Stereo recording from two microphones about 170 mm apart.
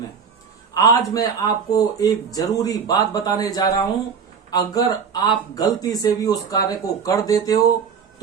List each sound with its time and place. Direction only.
0.7 s speech: 20° left (ahead or behind)